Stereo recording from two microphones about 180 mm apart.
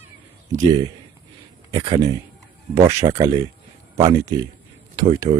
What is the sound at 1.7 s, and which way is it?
Speech, 20° right (ahead or behind).